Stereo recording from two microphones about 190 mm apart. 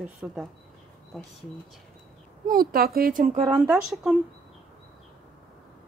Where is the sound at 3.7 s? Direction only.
5° right (ahead or behind).